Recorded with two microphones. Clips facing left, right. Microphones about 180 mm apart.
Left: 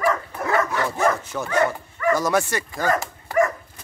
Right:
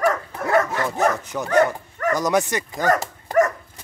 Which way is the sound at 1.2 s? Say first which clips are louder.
Right 3 dB; 15° right (ahead or behind).